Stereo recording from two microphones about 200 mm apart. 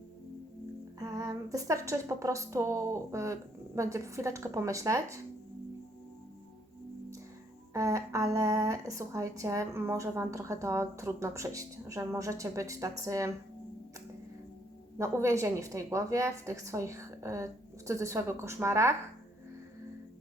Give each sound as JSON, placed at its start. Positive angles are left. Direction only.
{"t": 0.9, "sound": "speech", "side_deg": -15}
{"t": 7.7, "sound": "speech", "side_deg": -15}
{"t": 14.9, "sound": "speech", "side_deg": -15}